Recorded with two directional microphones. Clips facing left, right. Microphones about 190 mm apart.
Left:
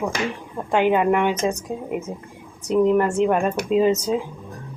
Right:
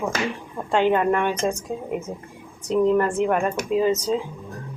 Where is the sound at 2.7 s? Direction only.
15° left (ahead or behind).